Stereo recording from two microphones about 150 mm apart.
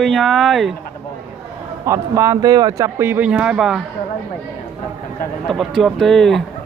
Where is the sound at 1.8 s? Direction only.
20° right (ahead or behind).